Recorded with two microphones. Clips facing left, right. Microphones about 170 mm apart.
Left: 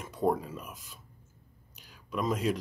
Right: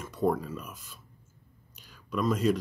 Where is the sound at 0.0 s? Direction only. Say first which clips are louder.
Right 1 dB; 20° left (ahead or behind).